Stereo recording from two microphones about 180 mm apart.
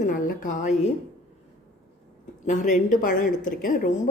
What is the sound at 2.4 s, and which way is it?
Speech, 45° left (ahead or behind).